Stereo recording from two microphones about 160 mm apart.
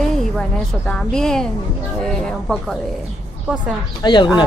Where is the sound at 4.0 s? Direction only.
30° left (ahead or behind).